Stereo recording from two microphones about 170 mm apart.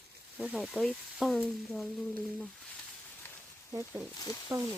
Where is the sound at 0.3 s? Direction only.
Centre (ahead or behind).